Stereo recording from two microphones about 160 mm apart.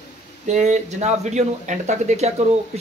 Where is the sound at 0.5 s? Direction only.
45° right (ahead or behind).